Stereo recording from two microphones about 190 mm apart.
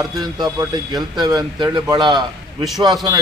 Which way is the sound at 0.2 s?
20° right (ahead or behind).